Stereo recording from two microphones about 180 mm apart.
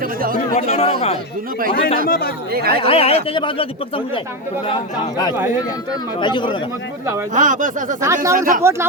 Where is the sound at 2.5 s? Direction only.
60° right (ahead or behind).